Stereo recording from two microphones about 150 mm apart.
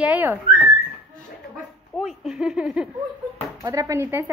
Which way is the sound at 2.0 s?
5° right (ahead or behind).